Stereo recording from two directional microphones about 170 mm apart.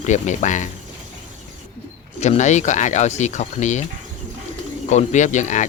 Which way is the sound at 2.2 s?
40° left (ahead or behind).